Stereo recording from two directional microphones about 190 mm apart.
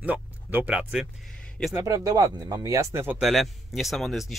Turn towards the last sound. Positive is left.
turn(degrees=0)  # may be behind; listen again after turning